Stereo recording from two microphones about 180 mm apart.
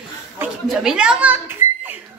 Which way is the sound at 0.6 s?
5° right (ahead or behind).